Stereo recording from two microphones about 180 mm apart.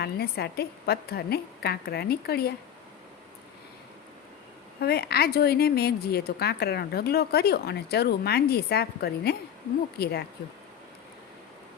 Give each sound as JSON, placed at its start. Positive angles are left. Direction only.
{"t": 0.0, "sound": "a woman's voice", "side_deg": 60}
{"t": 4.8, "sound": "a woman's voice", "side_deg": 60}